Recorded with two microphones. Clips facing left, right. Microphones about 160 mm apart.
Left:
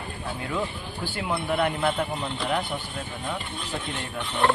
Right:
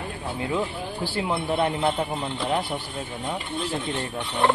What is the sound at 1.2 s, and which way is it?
Speech, 25° right (ahead or behind).